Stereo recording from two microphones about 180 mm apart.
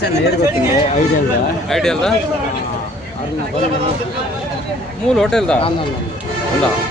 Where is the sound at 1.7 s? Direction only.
5° left (ahead or behind).